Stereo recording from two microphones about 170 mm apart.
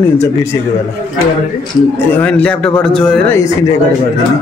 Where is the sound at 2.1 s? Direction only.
10° left (ahead or behind).